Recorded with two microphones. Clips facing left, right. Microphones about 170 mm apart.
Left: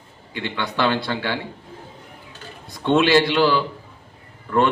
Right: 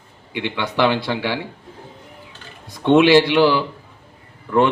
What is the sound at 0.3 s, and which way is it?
Speech, 15° right (ahead or behind).